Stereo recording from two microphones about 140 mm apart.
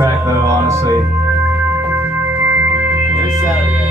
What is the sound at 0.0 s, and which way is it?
Music, 20° right (ahead or behind).